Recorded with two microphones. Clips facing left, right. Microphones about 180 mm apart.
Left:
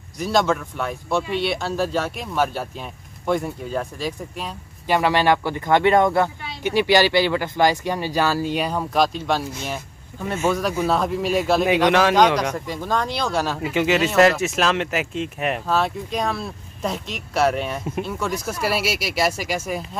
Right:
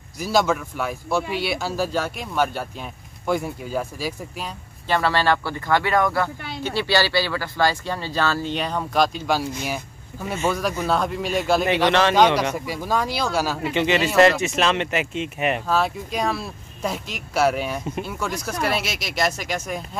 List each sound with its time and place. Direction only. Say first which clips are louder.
0.2 s speech: left 1 dB; centre (ahead or behind)
4.8 s speech: left 2 dB; 15° left (ahead or behind)
12.2 s speech: even; 5° right (ahead or behind)